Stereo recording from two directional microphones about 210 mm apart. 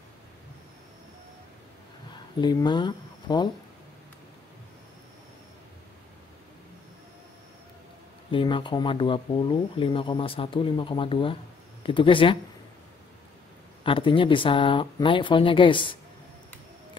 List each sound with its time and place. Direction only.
2.4 s speech: 20° left (ahead or behind)
8.3 s speech: 25° left (ahead or behind)
13.8 s speech: 25° left (ahead or behind)